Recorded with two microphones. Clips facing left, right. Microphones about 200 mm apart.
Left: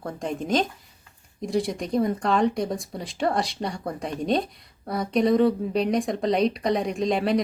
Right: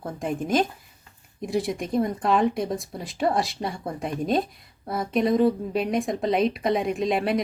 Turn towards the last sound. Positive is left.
turn(degrees=-5)  # may be behind; listen again after turning